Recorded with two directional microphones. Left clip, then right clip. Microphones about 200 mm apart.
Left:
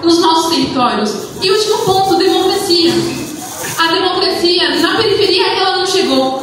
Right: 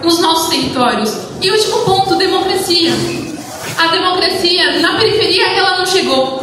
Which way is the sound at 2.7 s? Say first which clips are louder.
Left 1 dB; 15° right (ahead or behind).